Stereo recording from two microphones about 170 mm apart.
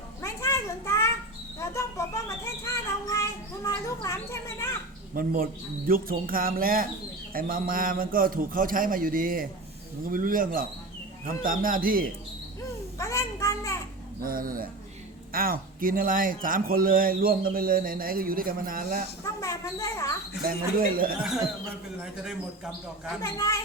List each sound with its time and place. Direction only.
0.2 s a sound: 15° left (ahead or behind)
5.1 s a man's voice: 55° right (ahead or behind)
13.0 s a sound: 20° left (ahead or behind)
14.2 s a man's voice: 55° right (ahead or behind)
19.4 s speech: 20° left (ahead or behind)
20.4 s a man's voice: 60° right (ahead or behind)
21.2 s a man's voice: 5° right (ahead or behind)
23.2 s speech: 15° left (ahead or behind)